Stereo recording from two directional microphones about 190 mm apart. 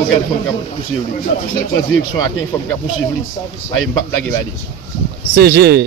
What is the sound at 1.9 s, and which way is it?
Speech, 90° left.